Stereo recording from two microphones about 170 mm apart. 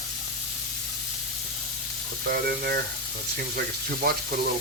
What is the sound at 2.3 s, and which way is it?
Frying, 65° right (ahead or behind).